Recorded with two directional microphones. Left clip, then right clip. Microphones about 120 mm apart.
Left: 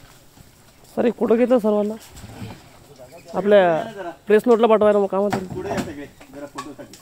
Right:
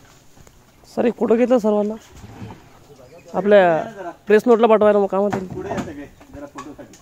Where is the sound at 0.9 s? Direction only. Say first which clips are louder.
Right 1 dB; 15° right (ahead or behind).